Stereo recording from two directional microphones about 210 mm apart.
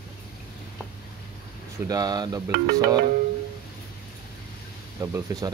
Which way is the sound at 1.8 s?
20° right (ahead or behind).